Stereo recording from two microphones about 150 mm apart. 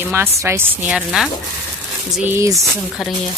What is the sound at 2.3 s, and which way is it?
Speech, 20° right (ahead or behind).